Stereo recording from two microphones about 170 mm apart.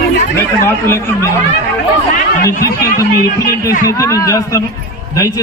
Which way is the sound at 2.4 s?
65° left (ahead or behind).